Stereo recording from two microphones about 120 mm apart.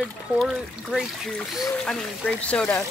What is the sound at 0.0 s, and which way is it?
Speech, centre (ahead or behind).